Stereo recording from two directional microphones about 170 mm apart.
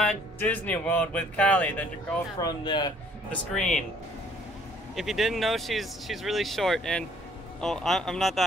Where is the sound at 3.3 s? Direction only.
5° left (ahead or behind).